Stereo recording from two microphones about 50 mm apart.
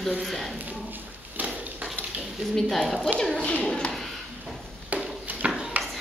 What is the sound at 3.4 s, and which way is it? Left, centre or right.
Speech, left.